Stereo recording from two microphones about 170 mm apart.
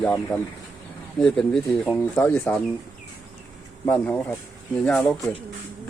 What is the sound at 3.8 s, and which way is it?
Speech, 10° left (ahead or behind).